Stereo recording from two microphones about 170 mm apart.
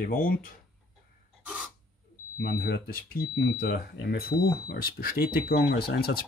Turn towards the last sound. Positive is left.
turn(degrees=65)  # may be behind; listen again after turning